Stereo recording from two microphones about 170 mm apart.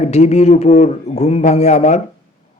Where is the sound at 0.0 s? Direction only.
40° left (ahead or behind).